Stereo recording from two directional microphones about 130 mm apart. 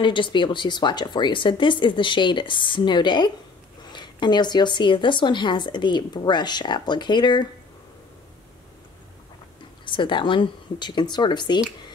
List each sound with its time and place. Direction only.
0.0 s a woman's voice: 40° left (ahead or behind)
9.8 s a woman's voice: 40° left (ahead or behind)